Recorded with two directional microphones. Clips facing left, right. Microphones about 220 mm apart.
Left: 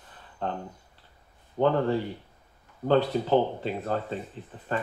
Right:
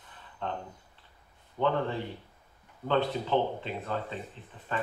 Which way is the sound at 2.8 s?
40° left (ahead or behind).